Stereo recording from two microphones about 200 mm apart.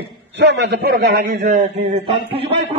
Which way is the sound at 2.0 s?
25° right (ahead or behind).